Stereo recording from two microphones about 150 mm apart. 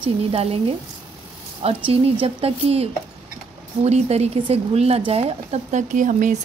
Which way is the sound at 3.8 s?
45° right (ahead or behind).